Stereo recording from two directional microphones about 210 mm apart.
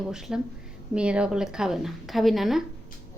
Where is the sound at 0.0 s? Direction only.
Centre (ahead or behind).